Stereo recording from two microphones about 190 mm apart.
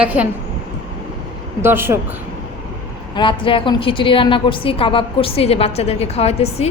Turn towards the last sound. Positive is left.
turn(degrees=35)  # may be behind; listen again after turning